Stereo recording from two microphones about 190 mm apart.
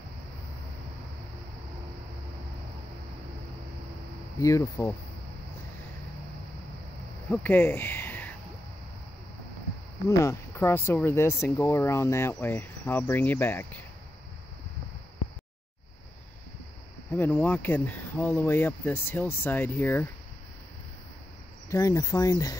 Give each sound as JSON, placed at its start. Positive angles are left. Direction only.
{"t": 4.4, "sound": "speech", "side_deg": 15}
{"t": 7.2, "sound": "speech", "side_deg": 10}
{"t": 10.0, "sound": "speech", "side_deg": 15}
{"t": 17.1, "sound": "speech", "side_deg": 10}
{"t": 21.6, "sound": "speech", "side_deg": 15}